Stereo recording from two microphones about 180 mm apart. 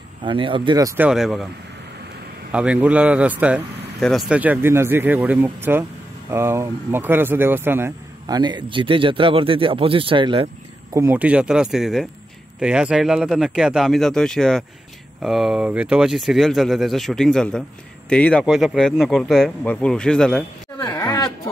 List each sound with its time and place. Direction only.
0.2 s speech: 30° right (ahead or behind)
1.0 s speech: 5° right (ahead or behind)
2.5 s speech: 5° right (ahead or behind)
8.4 s speech: 25° right (ahead or behind)
11.0 s speech: 10° right (ahead or behind)
20.9 s a sound: 15° left (ahead or behind)